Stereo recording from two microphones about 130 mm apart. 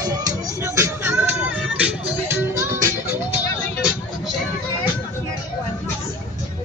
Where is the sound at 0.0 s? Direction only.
30° right (ahead or behind).